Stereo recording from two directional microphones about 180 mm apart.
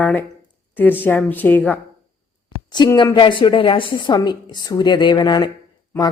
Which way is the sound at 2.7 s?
25° left (ahead or behind).